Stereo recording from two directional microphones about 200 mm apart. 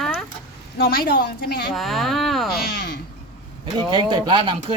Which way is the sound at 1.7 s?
Centre (ahead or behind).